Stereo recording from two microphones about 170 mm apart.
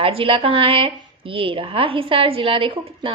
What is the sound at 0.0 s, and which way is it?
A woman's voice, 35° right (ahead or behind).